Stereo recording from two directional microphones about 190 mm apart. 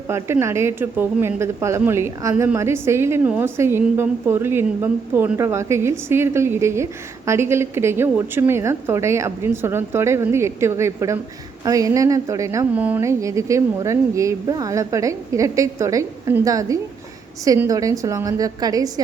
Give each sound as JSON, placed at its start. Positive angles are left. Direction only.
{"t": 0.1, "sound": "speech", "side_deg": -15}